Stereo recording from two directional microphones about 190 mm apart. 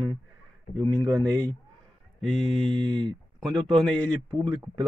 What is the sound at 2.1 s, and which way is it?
Mantra, 5° left (ahead or behind).